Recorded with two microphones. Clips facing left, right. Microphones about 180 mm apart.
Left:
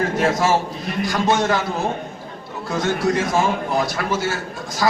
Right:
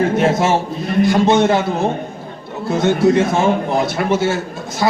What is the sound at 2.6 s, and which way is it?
A man's voice, 25° right (ahead or behind).